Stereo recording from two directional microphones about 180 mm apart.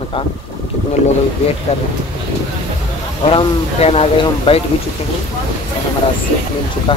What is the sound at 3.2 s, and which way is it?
Speech, 30° left (ahead or behind).